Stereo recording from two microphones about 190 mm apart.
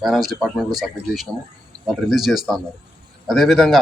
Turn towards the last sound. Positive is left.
turn(degrees=0)  # may be behind; listen again after turning